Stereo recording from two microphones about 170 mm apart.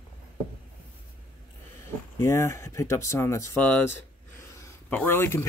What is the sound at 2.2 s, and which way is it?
Speech, 15° left (ahead or behind).